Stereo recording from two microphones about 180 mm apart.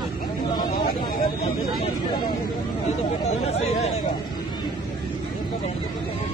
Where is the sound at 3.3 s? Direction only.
35° left (ahead or behind).